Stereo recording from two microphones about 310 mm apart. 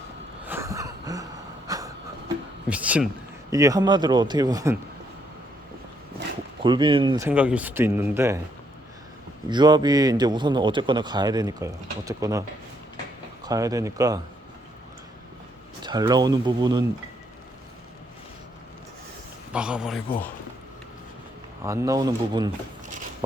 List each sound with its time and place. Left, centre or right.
0.4 s a sound: centre
2.6 s a man's voice: centre
6.6 s a man's voice: centre
9.5 s a man's voice: centre
15.8 s a man's voice: centre
19.5 s speech: centre
21.6 s a man's voice: centre